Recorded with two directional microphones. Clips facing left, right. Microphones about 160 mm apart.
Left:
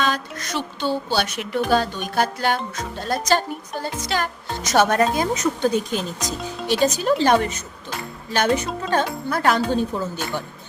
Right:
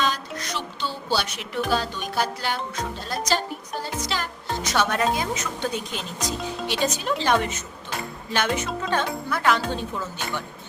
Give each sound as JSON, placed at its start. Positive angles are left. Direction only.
{"t": 0.0, "sound": "speech", "side_deg": 55}